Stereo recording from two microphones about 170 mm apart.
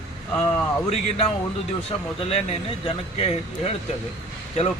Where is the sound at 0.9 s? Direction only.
40° left (ahead or behind).